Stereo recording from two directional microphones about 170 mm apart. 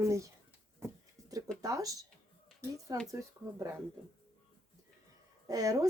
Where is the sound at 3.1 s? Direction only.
20° right (ahead or behind).